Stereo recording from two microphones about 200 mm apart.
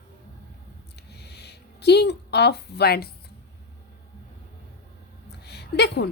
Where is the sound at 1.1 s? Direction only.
55° left (ahead or behind).